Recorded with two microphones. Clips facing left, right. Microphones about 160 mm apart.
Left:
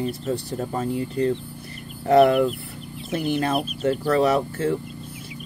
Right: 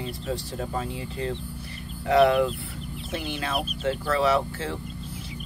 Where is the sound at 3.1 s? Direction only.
45° left (ahead or behind).